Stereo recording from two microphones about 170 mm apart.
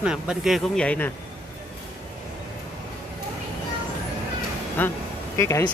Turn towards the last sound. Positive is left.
turn(degrees=15)  # may be behind; listen again after turning